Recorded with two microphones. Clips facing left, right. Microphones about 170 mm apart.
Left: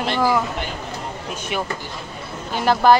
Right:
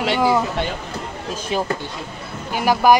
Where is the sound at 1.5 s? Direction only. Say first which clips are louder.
Right 3 dB; 30° right (ahead or behind).